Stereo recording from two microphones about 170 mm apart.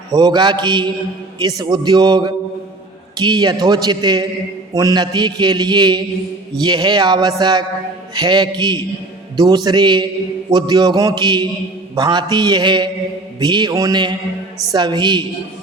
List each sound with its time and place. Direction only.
0.1 s a man's voice: 25° right (ahead or behind)